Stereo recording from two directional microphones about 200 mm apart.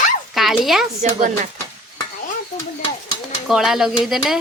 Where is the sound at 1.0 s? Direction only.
40° right (ahead or behind).